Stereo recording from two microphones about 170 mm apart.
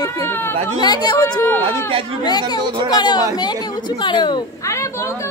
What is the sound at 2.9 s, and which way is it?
A child's voice, 25° left (ahead or behind).